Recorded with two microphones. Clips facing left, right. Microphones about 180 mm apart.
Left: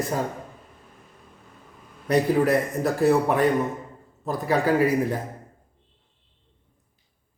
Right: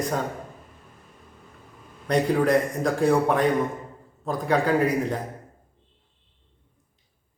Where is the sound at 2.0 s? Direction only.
5° left (ahead or behind).